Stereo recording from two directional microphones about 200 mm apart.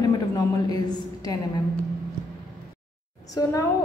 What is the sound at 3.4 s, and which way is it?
Speech, 20° left (ahead or behind).